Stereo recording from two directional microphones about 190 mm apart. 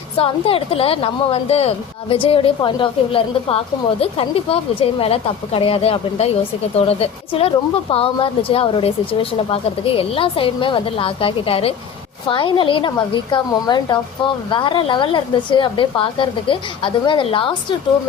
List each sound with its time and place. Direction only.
0.2 s a woman's voice: 30° left (ahead or behind)